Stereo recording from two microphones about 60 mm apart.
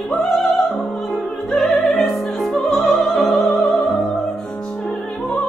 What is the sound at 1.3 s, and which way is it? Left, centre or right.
Opera, centre.